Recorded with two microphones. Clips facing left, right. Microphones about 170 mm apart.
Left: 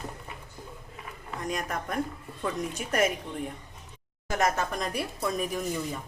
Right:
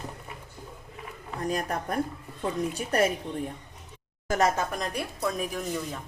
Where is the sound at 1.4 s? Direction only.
35° right (ahead or behind).